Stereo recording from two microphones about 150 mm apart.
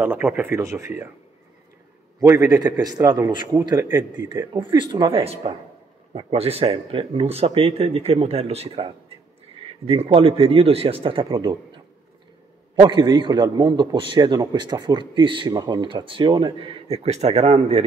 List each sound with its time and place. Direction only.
0.2 s speech: 10° right (ahead or behind)
2.4 s a man's voice: 25° right (ahead or behind)
4.3 s a man's voice: 30° right (ahead or behind)
5.2 s a man's voice: 40° right (ahead or behind)
11.2 s a man's voice: 25° right (ahead or behind)
12.8 s a man's voice: 30° right (ahead or behind); by 17.8 s 50° right (ahead or behind)